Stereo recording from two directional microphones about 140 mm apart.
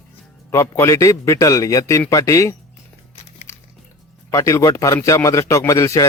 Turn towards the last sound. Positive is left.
turn(degrees=20)  # may be behind; listen again after turning